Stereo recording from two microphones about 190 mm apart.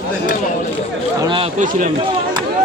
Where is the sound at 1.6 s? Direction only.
40° right (ahead or behind).